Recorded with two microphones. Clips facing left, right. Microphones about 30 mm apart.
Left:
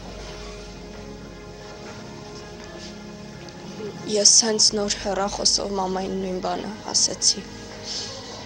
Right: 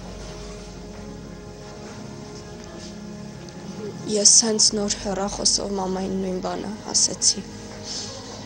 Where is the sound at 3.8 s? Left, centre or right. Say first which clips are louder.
Even; centre.